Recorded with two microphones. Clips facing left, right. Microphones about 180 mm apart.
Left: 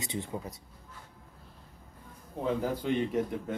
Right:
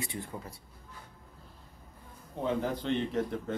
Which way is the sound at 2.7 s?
10° left (ahead or behind).